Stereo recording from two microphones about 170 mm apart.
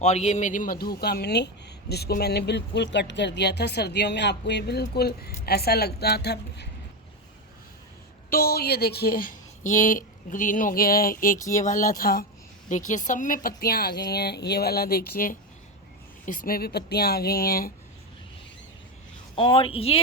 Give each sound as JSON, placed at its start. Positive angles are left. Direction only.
{"t": 0.0, "sound": "a woman's voice", "side_deg": 40}
{"t": 8.3, "sound": "a woman's voice", "side_deg": 60}
{"t": 12.6, "sound": "a woman's voice", "side_deg": 50}
{"t": 19.4, "sound": "speech", "side_deg": 30}